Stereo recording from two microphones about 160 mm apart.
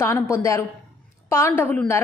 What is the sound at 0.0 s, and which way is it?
A woman's voice, 20° left (ahead or behind).